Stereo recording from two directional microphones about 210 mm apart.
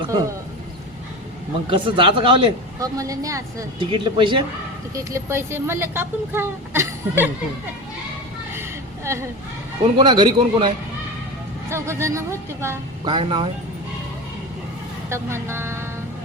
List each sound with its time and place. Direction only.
1.7 s speech: 25° right (ahead or behind)
4.9 s speech: 10° right (ahead or behind)
9.1 s speech: 10° right (ahead or behind)
11.7 s speech: 15° right (ahead or behind)
15.1 s speech: 10° right (ahead or behind)